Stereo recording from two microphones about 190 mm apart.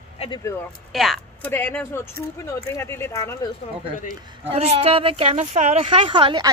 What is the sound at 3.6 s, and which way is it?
Speech, 35° left (ahead or behind).